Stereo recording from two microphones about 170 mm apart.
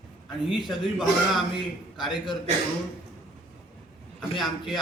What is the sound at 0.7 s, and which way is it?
Speech, centre (ahead or behind).